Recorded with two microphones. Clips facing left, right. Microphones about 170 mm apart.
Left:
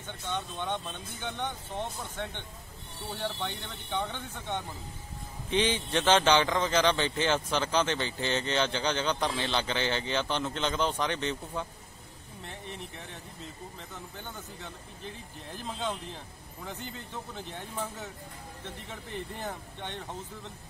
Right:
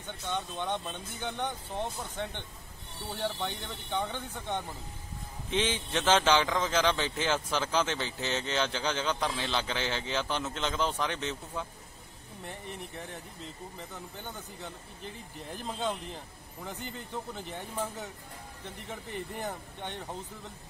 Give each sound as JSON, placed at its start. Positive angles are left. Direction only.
{"t": 0.0, "sound": "speech", "side_deg": -15}
{"t": 5.5, "sound": "a man's voice", "side_deg": 0}
{"t": 13.7, "sound": "speech", "side_deg": -15}
{"t": 16.6, "sound": "speech", "side_deg": -15}